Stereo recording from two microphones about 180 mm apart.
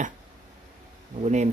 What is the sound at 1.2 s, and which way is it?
Speech, 40° right (ahead or behind).